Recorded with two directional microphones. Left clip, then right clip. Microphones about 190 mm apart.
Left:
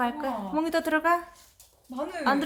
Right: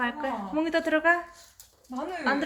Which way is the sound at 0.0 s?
15° left (ahead or behind).